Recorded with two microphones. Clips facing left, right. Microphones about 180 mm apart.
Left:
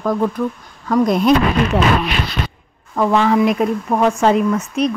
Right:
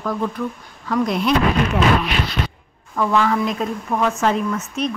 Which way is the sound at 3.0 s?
30° left (ahead or behind).